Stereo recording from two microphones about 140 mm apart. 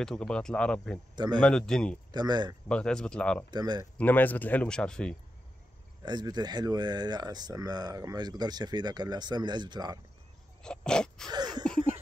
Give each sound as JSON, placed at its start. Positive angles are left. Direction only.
{"t": 0.0, "sound": "speech", "side_deg": 5}
{"t": 1.1, "sound": "speech", "side_deg": -30}
{"t": 1.4, "sound": "speech", "side_deg": 5}
{"t": 2.1, "sound": "speech", "side_deg": -30}
{"t": 2.7, "sound": "speech", "side_deg": 5}
{"t": 3.4, "sound": "speech", "side_deg": -30}
{"t": 4.0, "sound": "speech", "side_deg": 10}
{"t": 6.0, "sound": "speech", "side_deg": -30}
{"t": 10.6, "sound": "a sound", "side_deg": 5}
{"t": 11.2, "sound": "a sound", "side_deg": -30}